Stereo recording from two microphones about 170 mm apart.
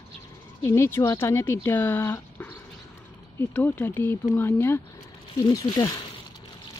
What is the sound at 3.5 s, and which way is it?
Speech, 10° left (ahead or behind).